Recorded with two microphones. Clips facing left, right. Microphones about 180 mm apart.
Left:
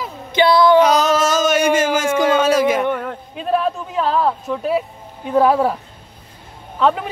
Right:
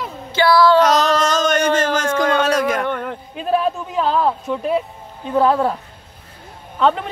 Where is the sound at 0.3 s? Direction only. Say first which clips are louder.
Left 1 dB; 20° left (ahead or behind).